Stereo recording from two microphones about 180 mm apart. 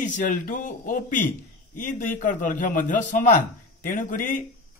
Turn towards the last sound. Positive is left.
turn(degrees=50)  # may be behind; listen again after turning